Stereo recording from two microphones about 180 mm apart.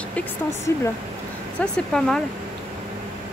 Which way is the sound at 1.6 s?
5° left (ahead or behind).